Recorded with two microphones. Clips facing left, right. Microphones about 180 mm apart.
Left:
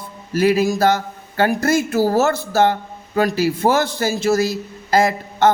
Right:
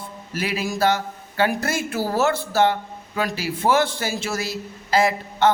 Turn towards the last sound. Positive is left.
turn(degrees=45)  # may be behind; listen again after turning